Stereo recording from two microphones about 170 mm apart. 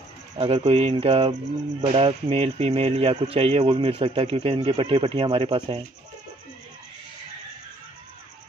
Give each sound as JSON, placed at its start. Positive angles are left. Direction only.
{"t": 0.4, "sound": "speech", "side_deg": -35}